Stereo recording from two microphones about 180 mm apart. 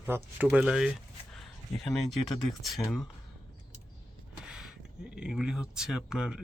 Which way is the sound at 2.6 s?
Centre (ahead or behind).